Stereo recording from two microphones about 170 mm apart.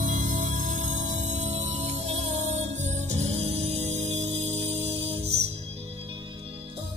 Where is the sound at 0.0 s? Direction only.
50° right (ahead or behind).